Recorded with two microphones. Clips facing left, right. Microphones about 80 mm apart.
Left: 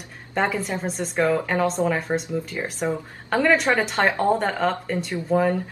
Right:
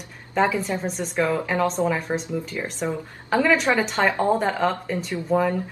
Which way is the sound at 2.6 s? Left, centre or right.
Centre.